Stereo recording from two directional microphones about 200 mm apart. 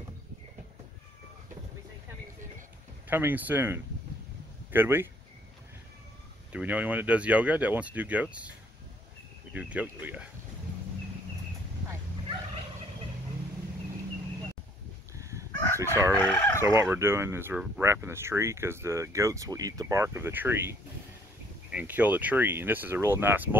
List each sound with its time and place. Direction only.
3.1 s speech: 10° right (ahead or behind)
6.5 s speech: 5° right (ahead or behind)
15.1 s chicken: 15° right (ahead or behind)
15.5 s chicken: 10° left (ahead or behind)
15.8 s speech: 15° right (ahead or behind)
16.2 s fowl: 10° left (ahead or behind)
16.6 s speech: 10° right (ahead or behind)